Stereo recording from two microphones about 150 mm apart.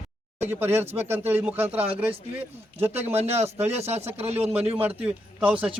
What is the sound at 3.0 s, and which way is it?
Speech, 45° right (ahead or behind).